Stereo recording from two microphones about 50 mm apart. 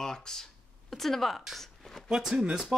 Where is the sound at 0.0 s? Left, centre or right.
Centre.